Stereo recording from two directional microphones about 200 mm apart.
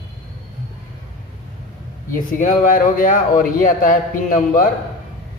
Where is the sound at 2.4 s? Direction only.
40° left (ahead or behind).